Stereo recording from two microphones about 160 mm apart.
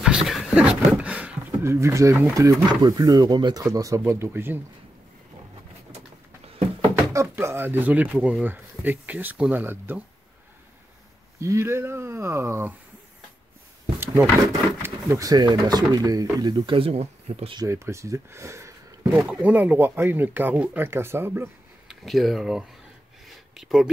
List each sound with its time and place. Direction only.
0.0 s a sound: 5° right (ahead or behind); by 2.5 s 20° right (ahead or behind)
2.6 s speech: 25° right (ahead or behind)
7.0 s speech: 15° right (ahead or behind)
11.3 s speech: 15° right (ahead or behind)
13.9 s drawer open or close: 15° right (ahead or behind)
14.4 s speech: 20° right (ahead or behind); by 17.6 s 35° right (ahead or behind)
17.6 s speech: 15° right (ahead or behind)
21.8 s speech: centre (ahead or behind)
23.2 s a sound: centre (ahead or behind)